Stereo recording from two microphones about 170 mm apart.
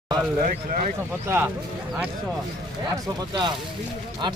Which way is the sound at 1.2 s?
15° right (ahead or behind).